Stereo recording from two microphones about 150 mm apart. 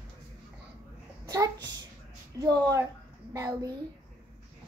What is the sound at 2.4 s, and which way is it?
Speech, 25° right (ahead or behind).